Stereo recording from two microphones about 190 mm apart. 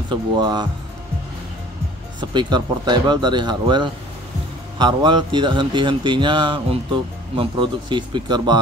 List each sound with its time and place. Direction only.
0.1 s speech: 25° right (ahead or behind)
2.1 s speech: 25° right (ahead or behind)